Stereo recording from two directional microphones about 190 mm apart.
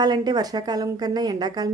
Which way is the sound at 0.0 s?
20° right (ahead or behind).